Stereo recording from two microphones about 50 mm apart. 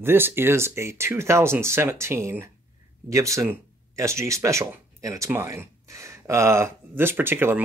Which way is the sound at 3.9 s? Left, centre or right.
Right.